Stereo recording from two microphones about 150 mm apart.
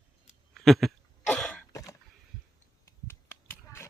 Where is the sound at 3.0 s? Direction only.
15° left (ahead or behind).